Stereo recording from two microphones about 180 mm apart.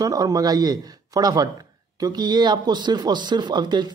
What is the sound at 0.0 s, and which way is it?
Speech, 20° right (ahead or behind).